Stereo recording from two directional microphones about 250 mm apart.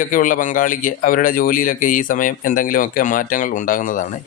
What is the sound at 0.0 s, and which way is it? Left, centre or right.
A man's voice, left.